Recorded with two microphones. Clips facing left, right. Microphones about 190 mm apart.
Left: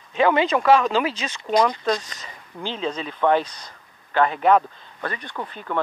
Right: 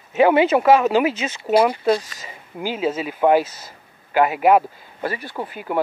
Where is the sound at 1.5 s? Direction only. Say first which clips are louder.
Right 3 dB; 40° right (ahead or behind).